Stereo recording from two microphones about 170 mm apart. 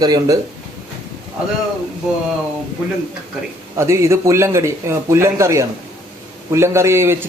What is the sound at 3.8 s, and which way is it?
A man's voice, 15° right (ahead or behind).